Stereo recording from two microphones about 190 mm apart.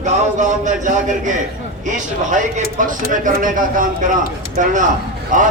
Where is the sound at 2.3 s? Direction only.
40° right (ahead or behind).